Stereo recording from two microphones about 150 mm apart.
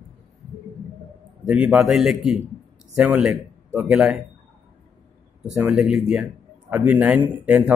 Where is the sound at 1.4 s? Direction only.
5° right (ahead or behind).